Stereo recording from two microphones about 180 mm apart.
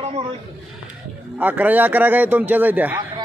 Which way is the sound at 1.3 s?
10° right (ahead or behind).